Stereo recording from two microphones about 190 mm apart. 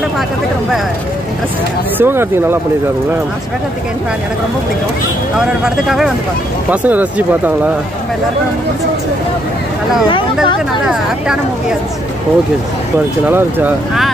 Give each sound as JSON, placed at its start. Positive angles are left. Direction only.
{"t": 2.0, "sound": "speech", "side_deg": -10}
{"t": 5.4, "sound": "speech", "side_deg": -5}
{"t": 10.0, "sound": "speech", "side_deg": 25}
{"t": 13.3, "sound": "speech", "side_deg": -10}